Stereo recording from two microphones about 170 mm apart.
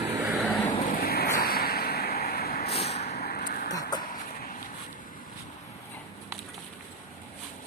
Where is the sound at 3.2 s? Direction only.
60° left (ahead or behind).